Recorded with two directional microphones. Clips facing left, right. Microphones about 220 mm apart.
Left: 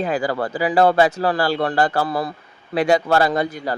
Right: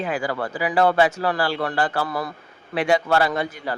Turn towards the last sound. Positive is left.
turn(degrees=40)  # may be behind; listen again after turning